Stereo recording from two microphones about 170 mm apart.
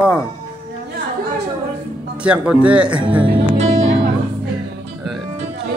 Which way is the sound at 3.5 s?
40° right (ahead or behind).